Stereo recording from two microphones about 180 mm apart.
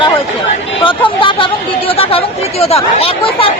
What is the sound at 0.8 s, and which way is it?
Chatter, 30° left (ahead or behind).